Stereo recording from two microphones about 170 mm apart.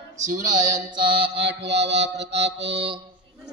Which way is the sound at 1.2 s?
75° right (ahead or behind).